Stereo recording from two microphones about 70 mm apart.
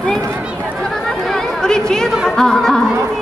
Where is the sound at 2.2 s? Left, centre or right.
Centre.